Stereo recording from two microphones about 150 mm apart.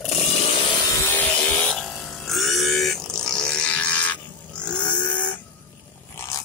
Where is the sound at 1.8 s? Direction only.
Centre (ahead or behind).